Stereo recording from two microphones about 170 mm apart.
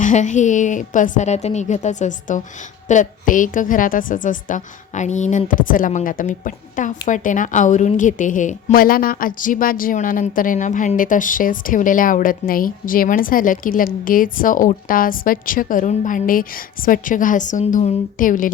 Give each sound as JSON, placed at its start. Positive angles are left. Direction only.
{"t": 0.0, "sound": "a woman's voice", "side_deg": 45}